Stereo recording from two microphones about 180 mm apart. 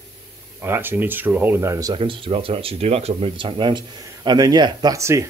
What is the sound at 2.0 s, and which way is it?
Speech, 30° right (ahead or behind).